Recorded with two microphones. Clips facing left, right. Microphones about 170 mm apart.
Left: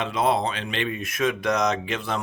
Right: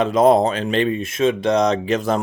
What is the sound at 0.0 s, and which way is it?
Speech, 45° right (ahead or behind).